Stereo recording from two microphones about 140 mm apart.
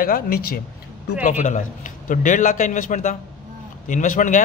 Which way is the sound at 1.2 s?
60° left (ahead or behind).